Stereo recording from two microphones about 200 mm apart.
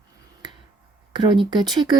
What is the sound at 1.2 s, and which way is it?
Speech, 25° right (ahead or behind).